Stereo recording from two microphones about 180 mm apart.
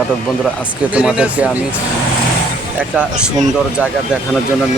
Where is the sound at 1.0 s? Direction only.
5° right (ahead or behind).